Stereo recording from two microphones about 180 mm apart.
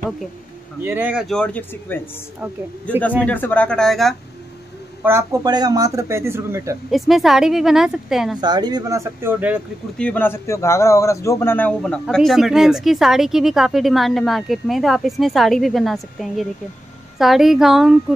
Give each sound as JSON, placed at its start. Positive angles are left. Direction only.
{"t": 0.8, "sound": "a man's voice", "side_deg": -10}
{"t": 3.3, "sound": "a man's voice", "side_deg": 10}
{"t": 5.0, "sound": "speech", "side_deg": -15}
{"t": 6.9, "sound": "a man's voice", "side_deg": 0}
{"t": 8.4, "sound": "speech", "side_deg": -25}
{"t": 9.9, "sound": "a man's voice", "side_deg": 10}